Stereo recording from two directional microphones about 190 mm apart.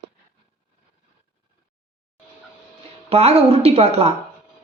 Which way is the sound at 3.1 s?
35° right (ahead or behind).